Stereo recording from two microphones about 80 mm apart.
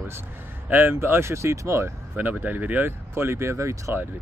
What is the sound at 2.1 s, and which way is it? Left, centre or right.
Speech, right.